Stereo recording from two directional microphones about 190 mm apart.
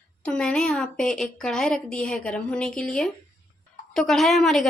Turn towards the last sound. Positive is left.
turn(degrees=0)  # may be behind; listen again after turning